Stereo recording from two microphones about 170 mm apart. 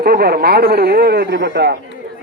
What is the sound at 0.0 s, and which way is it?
A man's voice, 60° right (ahead or behind).